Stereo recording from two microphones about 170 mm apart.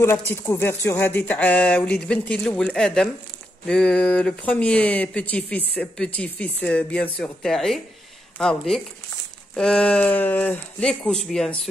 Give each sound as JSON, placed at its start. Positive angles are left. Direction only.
{"t": 0.0, "sound": "speech", "side_deg": 15}